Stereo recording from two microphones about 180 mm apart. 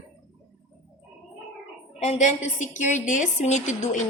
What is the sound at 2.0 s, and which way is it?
A woman's voice, 40° left (ahead or behind).